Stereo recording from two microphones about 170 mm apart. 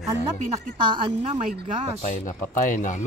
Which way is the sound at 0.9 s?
30° right (ahead or behind).